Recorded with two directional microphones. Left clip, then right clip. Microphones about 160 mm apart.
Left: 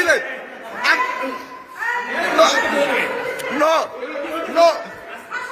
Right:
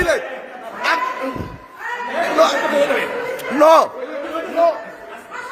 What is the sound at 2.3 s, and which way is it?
Speech, 20° right (ahead or behind).